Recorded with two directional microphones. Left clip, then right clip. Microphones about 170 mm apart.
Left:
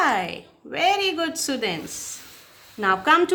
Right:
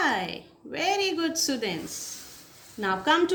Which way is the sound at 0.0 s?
40° left (ahead or behind).